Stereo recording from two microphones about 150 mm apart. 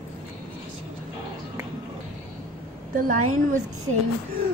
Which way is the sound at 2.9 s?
60° right (ahead or behind).